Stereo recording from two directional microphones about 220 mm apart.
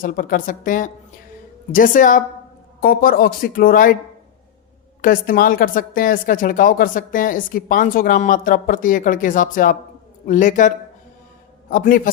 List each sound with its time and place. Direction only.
0.0 s speech: 40° left (ahead or behind)
5.0 s speech: 40° left (ahead or behind)
11.7 s speech: 40° left (ahead or behind)